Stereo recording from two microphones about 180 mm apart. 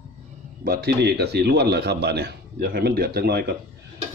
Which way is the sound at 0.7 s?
60° right (ahead or behind).